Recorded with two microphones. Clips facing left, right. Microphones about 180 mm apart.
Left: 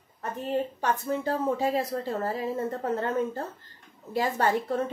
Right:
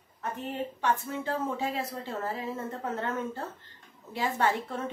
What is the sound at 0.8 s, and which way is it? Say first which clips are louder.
A woman's voice: left 3 dB; 35° left (ahead or behind).